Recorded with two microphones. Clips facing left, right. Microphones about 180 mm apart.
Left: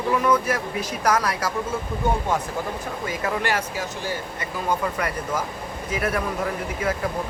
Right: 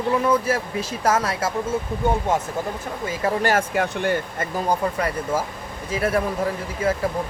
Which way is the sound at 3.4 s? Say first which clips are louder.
Right 6 dB; 40° right (ahead or behind).